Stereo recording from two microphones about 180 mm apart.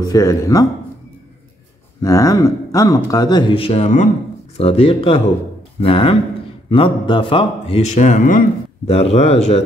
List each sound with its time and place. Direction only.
0.0 s speech: 20° left (ahead or behind)
2.0 s speech: 20° left (ahead or behind); by 9.4 s 35° left (ahead or behind)